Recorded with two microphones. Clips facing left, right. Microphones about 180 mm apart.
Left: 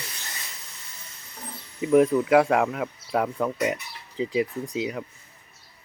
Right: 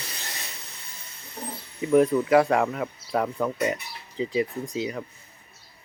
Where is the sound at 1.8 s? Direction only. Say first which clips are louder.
Left 1 dB; 5° left (ahead or behind).